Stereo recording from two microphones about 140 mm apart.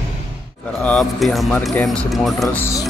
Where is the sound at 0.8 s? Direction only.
10° left (ahead or behind).